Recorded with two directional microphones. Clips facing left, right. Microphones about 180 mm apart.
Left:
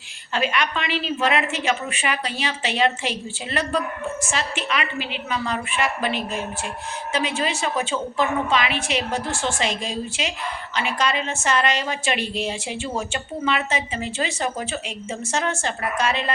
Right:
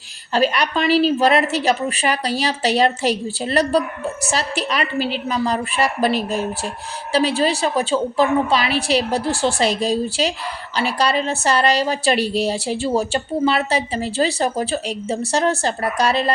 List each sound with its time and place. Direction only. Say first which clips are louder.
0.3 s a woman's voice: right 5 dB; 35° right (ahead or behind)